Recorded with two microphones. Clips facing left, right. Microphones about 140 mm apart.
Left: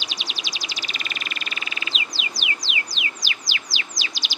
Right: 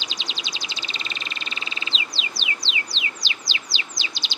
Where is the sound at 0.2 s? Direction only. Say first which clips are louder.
Even; 25° right (ahead or behind).